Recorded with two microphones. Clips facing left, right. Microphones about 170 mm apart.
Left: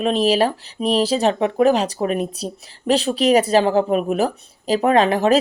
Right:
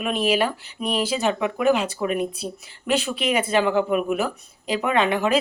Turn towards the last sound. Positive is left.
turn(degrees=35)  # may be behind; listen again after turning